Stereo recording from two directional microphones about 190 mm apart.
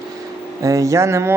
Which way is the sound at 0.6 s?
15° right (ahead or behind).